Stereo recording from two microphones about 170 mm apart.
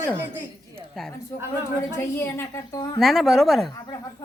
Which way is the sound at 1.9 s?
15° left (ahead or behind).